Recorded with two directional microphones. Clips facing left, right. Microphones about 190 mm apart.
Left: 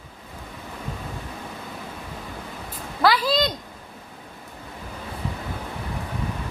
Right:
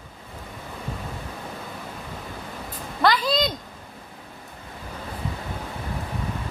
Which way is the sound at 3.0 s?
5° left (ahead or behind).